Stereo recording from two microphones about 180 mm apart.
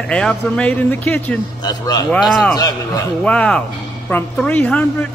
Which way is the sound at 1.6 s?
20° left (ahead or behind).